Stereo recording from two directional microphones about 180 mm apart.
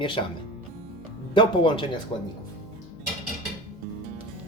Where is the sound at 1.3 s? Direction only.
25° left (ahead or behind).